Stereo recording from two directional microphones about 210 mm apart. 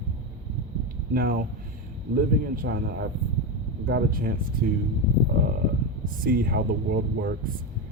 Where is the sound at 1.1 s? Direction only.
45° right (ahead or behind).